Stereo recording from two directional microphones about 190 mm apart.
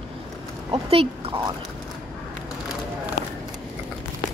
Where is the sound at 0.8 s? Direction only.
30° right (ahead or behind).